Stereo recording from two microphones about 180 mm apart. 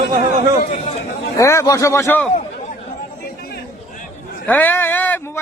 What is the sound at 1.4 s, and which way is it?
Speech, 15° left (ahead or behind).